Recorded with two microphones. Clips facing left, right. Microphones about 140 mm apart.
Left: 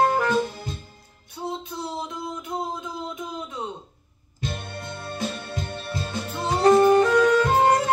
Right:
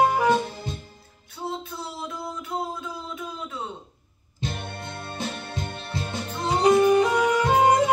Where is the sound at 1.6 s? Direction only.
20° left (ahead or behind).